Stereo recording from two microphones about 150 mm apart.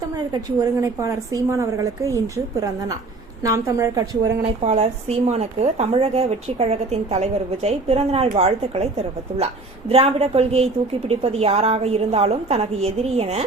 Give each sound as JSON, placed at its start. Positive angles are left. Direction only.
{"t": 0.6, "sound": "a woman's voice", "side_deg": -20}
{"t": 4.6, "sound": "speech", "side_deg": -45}